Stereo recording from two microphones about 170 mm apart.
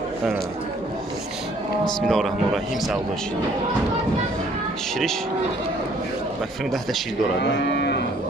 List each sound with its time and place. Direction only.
2.0 s speech: centre (ahead or behind)
7.6 s moo: 75° left (ahead or behind)